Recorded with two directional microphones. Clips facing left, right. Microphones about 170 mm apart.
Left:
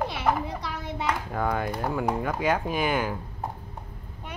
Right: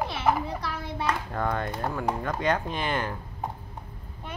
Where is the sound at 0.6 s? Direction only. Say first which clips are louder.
Even; 20° left (ahead or behind).